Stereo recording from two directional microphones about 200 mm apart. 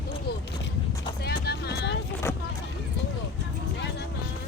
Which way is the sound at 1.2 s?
55° left (ahead or behind).